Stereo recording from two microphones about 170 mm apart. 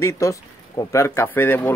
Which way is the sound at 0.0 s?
20° left (ahead or behind).